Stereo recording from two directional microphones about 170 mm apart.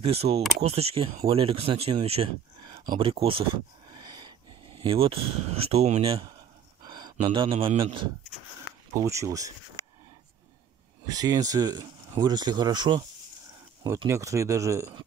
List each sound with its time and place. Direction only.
0.0 s speech: 35° right (ahead or behind)
3.9 s wheeze: 25° right (ahead or behind)
4.7 s speech: 30° right (ahead or behind)
6.8 s a sound: 25° right (ahead or behind)
7.2 s speech: 35° right (ahead or behind)
8.9 s speech: 15° right (ahead or behind)
11.1 s speech: 20° right (ahead or behind)
14.0 s speech: 15° right (ahead or behind)